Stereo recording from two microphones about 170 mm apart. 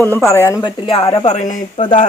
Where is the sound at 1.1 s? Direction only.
40° left (ahead or behind).